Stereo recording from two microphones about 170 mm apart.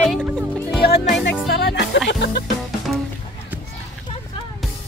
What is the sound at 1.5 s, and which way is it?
Music, 75° left (ahead or behind).